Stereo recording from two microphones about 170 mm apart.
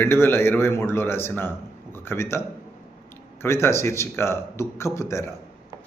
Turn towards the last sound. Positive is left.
turn(degrees=15)  # may be behind; listen again after turning